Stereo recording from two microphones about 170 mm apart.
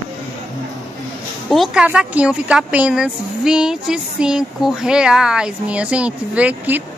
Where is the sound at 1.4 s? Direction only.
Centre (ahead or behind).